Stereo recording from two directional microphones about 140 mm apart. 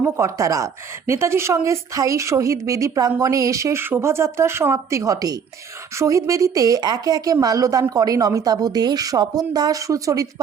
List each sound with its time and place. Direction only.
0.0 s speech: 20° right (ahead or behind)